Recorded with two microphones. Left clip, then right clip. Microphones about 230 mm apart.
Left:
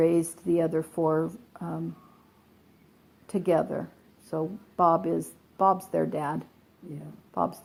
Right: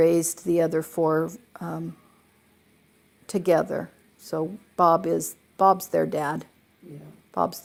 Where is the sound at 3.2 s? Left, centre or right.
Right.